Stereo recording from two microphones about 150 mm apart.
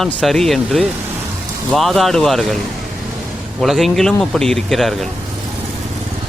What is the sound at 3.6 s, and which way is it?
Speech, centre (ahead or behind).